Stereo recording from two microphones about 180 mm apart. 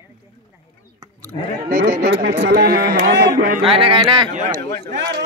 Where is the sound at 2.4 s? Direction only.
60° right (ahead or behind).